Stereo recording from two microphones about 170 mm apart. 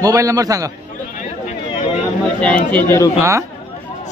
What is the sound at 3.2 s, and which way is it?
Speech, 15° right (ahead or behind).